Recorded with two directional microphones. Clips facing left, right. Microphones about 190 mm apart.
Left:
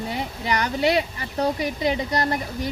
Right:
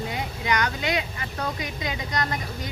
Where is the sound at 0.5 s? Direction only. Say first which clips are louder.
Left 6 dB; 35° left (ahead or behind).